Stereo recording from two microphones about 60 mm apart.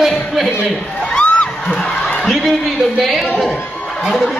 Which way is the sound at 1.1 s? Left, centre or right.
Centre.